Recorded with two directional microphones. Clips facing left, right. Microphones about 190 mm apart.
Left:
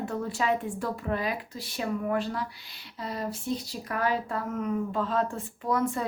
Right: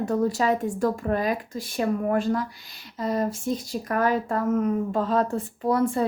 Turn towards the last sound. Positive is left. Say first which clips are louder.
# right 5 dB
turn(degrees=-30)  # may be behind; listen again after turning